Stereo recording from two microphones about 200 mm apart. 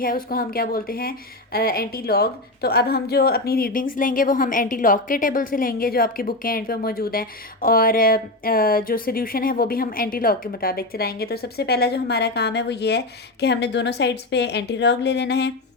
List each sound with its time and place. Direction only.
0.0 s a woman's voice: 45° left (ahead or behind)